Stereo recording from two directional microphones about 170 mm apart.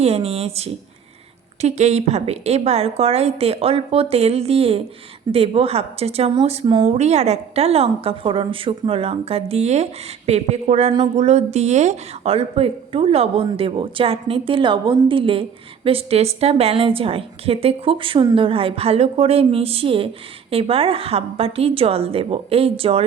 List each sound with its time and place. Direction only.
0.0 s a woman's voice: 35° right (ahead or behind)